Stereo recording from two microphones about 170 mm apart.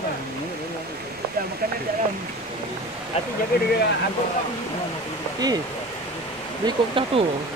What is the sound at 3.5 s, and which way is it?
Speech, 65° left (ahead or behind).